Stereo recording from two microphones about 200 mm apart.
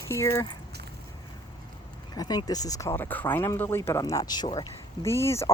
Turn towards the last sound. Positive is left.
turn(degrees=15)  # may be behind; listen again after turning